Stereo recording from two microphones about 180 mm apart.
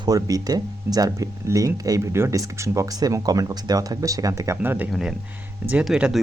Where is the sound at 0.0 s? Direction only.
20° right (ahead or behind).